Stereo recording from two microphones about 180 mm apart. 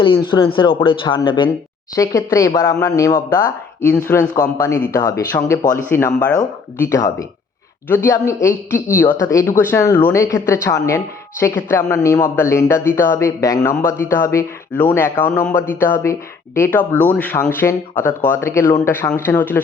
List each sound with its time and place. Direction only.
0.0 s speech: 25° left (ahead or behind)
3.9 s speech: 10° left (ahead or behind)
7.9 s speech: 10° left (ahead or behind)